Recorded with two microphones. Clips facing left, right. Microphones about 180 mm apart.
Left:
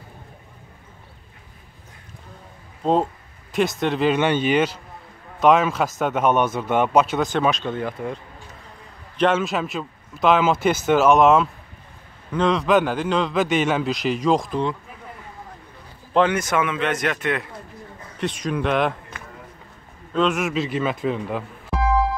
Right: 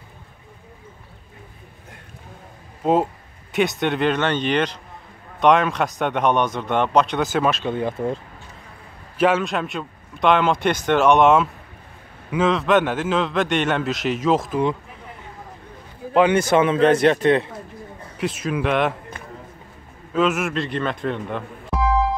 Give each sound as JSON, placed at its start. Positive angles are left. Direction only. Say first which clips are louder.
{"t": 2.8, "sound": "a man's voice", "louder": "right 1 dB", "side_deg": -5}
{"t": 7.7, "sound": "speech", "louder": "right 3 dB", "side_deg": -20}
{"t": 9.2, "sound": "a man's voice", "louder": "right 1 dB", "side_deg": 0}
{"t": 16.0, "sound": "a sound", "louder": "right 2 dB", "side_deg": -60}
{"t": 16.3, "sound": "speech", "louder": "right 6 dB", "side_deg": -30}
{"t": 18.1, "sound": "a man's voice", "louder": "right 1 dB", "side_deg": -5}
{"t": 20.1, "sound": "a man's voice", "louder": "right 1 dB", "side_deg": -5}